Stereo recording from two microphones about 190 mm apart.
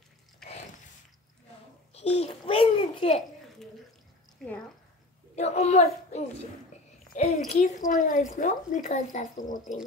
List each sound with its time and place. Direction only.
2.0 s a woman's voice: 35° left (ahead or behind)
4.4 s a sound: centre (ahead or behind)
5.3 s a child's voice: 35° left (ahead or behind)